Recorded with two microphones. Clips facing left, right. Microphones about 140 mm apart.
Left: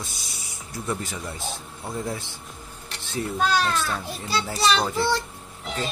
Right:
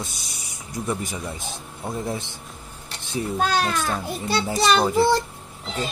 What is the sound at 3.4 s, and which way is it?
Speech, 50° right (ahead or behind).